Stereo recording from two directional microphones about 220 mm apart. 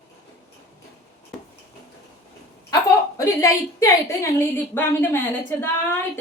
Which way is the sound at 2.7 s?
15° left (ahead or behind).